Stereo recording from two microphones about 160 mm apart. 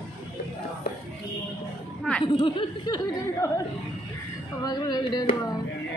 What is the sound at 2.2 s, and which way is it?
Speech, 30° left (ahead or behind).